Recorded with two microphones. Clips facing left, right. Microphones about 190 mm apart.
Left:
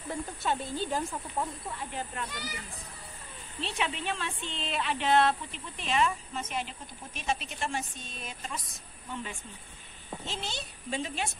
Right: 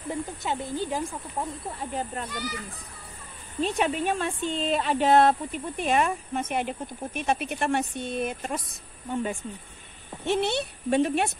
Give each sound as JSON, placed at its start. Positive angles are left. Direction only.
{"t": 0.1, "sound": "speech", "side_deg": -15}
{"t": 1.7, "sound": "speech", "side_deg": -40}
{"t": 3.6, "sound": "speech", "side_deg": -45}
{"t": 10.2, "sound": "a woman's voice", "side_deg": -65}